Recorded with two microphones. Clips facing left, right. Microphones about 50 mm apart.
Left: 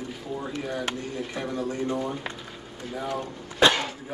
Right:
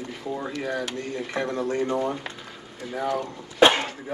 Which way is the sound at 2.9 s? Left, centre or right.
Right.